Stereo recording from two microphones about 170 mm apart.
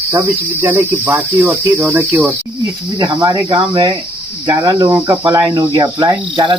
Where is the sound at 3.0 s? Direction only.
25° right (ahead or behind).